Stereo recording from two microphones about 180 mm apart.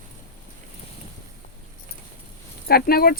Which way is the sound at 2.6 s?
55° left (ahead or behind).